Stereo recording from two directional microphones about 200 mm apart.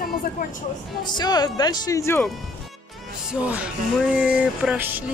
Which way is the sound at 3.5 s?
5° right (ahead or behind).